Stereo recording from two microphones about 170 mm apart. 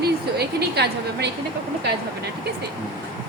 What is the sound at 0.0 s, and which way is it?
Speech, 75° right (ahead or behind).